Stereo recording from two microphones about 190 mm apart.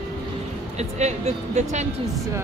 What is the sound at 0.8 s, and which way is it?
Speech, 35° right (ahead or behind).